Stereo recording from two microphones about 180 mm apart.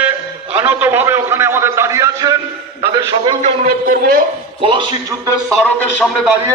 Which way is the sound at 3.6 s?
55° right (ahead or behind).